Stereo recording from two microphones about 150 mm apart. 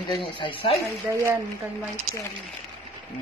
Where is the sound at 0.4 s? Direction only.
35° left (ahead or behind).